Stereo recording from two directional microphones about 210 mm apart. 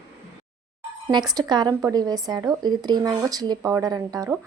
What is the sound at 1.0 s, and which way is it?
Speech, 20° right (ahead or behind).